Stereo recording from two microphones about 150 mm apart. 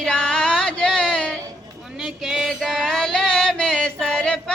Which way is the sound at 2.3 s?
Centre (ahead or behind).